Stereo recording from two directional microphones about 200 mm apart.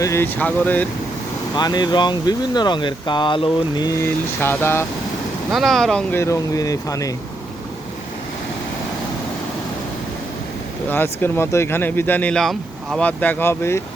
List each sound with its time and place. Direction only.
0.0 s speech: 15° left (ahead or behind)
1.5 s speech: 20° left (ahead or behind)
5.5 s speech: centre (ahead or behind); by 7.1 s 15° left (ahead or behind)
10.8 s speech: 10° left (ahead or behind)